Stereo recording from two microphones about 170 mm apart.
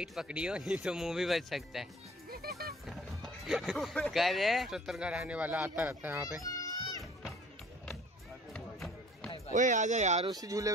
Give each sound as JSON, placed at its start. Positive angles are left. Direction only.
{"t": 0.0, "sound": "speech", "side_deg": -5}
{"t": 2.3, "sound": "speech", "side_deg": -65}
{"t": 2.9, "sound": "speech", "side_deg": 0}
{"t": 6.4, "sound": "children playing", "side_deg": 20}
{"t": 8.5, "sound": "a sound", "side_deg": 5}
{"t": 9.5, "sound": "speech", "side_deg": -45}
{"t": 10.4, "sound": "speech", "side_deg": -20}